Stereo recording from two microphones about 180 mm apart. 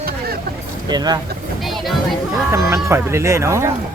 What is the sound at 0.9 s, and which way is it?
Speech, 20° right (ahead or behind).